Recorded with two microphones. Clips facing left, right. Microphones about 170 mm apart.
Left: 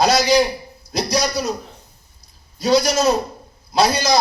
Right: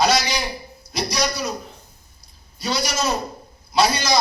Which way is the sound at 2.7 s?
35° left (ahead or behind).